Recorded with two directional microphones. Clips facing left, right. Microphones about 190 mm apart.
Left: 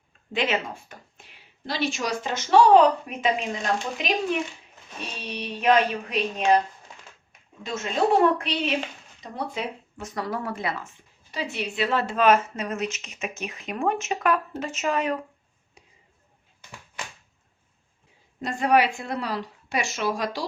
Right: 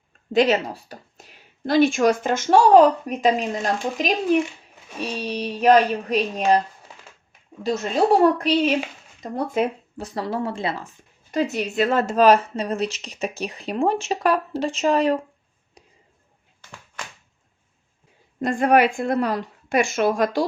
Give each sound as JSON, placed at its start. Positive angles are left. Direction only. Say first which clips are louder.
{"t": 0.3, "sound": "speech", "louder": "right 8 dB", "side_deg": -40}
{"t": 7.6, "sound": "a woman's voice", "louder": "right 4 dB", "side_deg": -35}
{"t": 10.0, "sound": "speech", "louder": "right 4 dB", "side_deg": -30}
{"t": 11.3, "sound": "speech", "louder": "right 8 dB", "side_deg": -45}
{"t": 18.3, "sound": "a woman's voice", "louder": "right 4 dB", "side_deg": -50}